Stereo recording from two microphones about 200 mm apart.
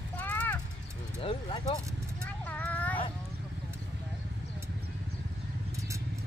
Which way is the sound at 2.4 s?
10° left (ahead or behind).